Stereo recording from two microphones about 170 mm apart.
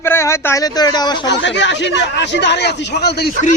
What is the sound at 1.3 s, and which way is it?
Speech, 90° left.